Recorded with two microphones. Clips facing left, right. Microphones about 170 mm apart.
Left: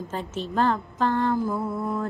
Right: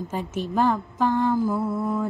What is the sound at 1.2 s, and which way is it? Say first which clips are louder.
Mantra: right 2 dB; 5° right (ahead or behind).